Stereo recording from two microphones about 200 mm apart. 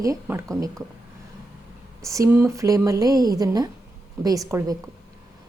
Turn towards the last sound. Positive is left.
turn(degrees=-15)  # may be behind; listen again after turning